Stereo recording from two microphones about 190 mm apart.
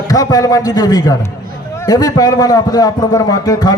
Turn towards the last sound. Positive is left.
turn(degrees=20)  # may be behind; listen again after turning